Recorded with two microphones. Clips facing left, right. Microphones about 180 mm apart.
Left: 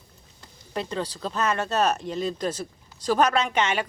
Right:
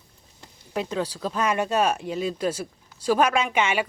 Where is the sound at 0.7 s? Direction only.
10° right (ahead or behind).